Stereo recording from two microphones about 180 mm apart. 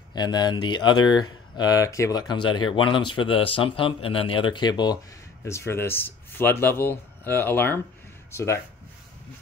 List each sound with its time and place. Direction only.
0.1 s speech: 25° left (ahead or behind)